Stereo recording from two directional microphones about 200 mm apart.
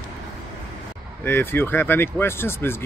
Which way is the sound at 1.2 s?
10° left (ahead or behind).